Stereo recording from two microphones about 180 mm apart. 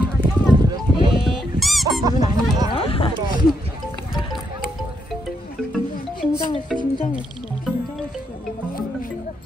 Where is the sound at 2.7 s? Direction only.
30° left (ahead or behind).